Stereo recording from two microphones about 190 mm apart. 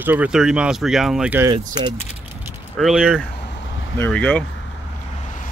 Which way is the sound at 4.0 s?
10° left (ahead or behind).